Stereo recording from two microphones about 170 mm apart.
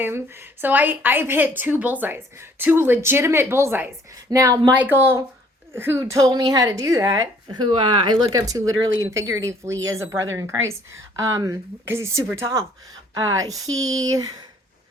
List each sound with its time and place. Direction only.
0.0 s a woman's voice: 15° right (ahead or behind)